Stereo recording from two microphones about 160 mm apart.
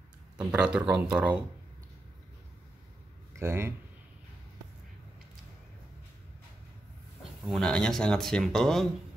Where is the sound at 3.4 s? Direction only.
15° right (ahead or behind).